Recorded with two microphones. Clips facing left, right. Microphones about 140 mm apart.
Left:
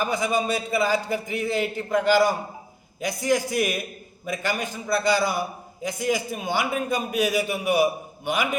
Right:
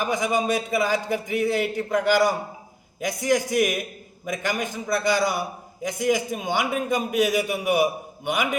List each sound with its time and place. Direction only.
0.0 s a man's voice: 15° right (ahead or behind)